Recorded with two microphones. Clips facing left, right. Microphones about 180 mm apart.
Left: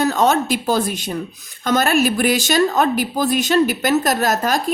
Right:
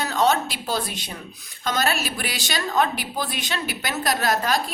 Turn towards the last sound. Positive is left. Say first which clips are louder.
# left 4 dB
turn(degrees=45)  # may be behind; listen again after turning